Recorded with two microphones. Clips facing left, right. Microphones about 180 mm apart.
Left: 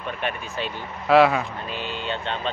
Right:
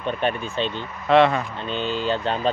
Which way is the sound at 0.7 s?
5° left (ahead or behind).